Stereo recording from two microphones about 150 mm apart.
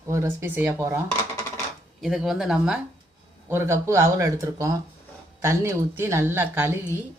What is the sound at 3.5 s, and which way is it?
Speech, 15° right (ahead or behind).